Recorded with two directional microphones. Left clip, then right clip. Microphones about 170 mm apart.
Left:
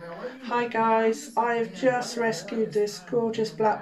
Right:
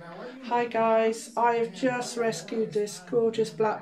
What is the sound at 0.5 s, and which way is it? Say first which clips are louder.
Speech: left 1 dB; 15° right (ahead or behind).